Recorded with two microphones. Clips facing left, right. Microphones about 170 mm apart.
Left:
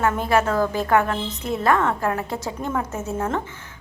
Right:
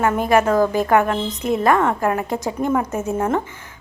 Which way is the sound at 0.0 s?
15° right (ahead or behind).